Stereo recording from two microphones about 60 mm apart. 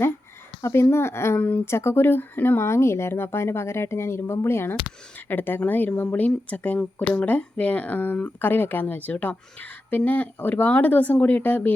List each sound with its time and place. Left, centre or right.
0.6 s speech: left
1.4 s speech: left
1.6 s speech: left
6.2 s speech: left